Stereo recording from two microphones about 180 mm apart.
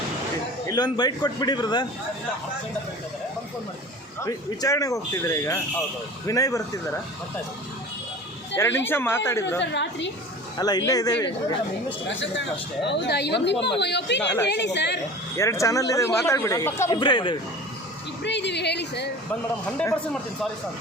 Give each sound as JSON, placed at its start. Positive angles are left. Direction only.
{"t": 0.7, "sound": "a man's voice", "side_deg": 25}
{"t": 4.2, "sound": "a man's voice", "side_deg": 20}
{"t": 8.5, "sound": "speech", "side_deg": 15}
{"t": 9.6, "sound": "speech", "side_deg": 75}
{"t": 10.6, "sound": "a man's voice", "side_deg": 20}
{"t": 12.0, "sound": "speech", "side_deg": 85}
{"t": 15.4, "sound": "speech", "side_deg": 15}
{"t": 17.0, "sound": "a man's voice", "side_deg": 25}
{"t": 18.2, "sound": "speech", "side_deg": 75}